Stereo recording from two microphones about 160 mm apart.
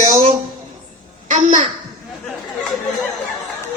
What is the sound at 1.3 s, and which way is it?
Speech, 50° right (ahead or behind).